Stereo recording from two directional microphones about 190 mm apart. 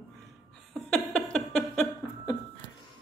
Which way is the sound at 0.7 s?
5° left (ahead or behind).